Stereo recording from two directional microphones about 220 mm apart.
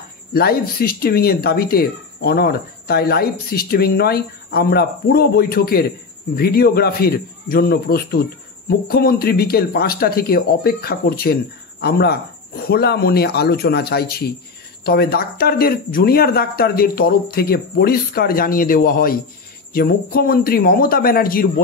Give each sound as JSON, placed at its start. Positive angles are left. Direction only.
{"t": 0.3, "sound": "speech", "side_deg": 45}